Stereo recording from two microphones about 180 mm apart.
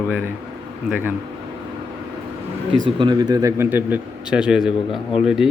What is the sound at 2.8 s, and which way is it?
A man's voice, 25° right (ahead or behind).